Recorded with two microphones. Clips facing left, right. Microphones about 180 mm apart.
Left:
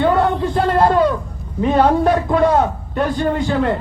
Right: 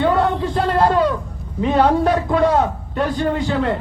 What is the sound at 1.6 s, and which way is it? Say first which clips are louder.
A man's voice: left 1 dB; 45° left (ahead or behind).